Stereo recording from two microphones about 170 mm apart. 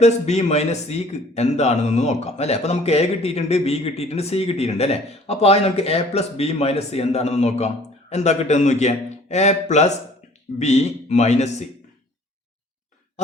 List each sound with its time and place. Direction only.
0.0 s a man's voice: 40° left (ahead or behind)